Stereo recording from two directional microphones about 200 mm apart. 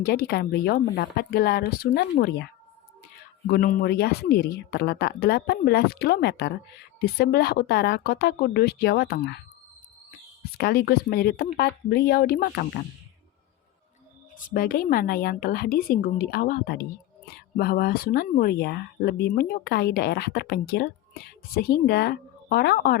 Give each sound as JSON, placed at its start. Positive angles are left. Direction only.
{"t": 0.0, "sound": "speech", "side_deg": 50}
{"t": 3.5, "sound": "speech", "side_deg": 45}
{"t": 10.6, "sound": "speech", "side_deg": 50}
{"t": 14.3, "sound": "speech", "side_deg": 45}